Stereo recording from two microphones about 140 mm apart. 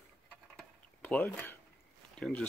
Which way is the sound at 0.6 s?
10° left (ahead or behind).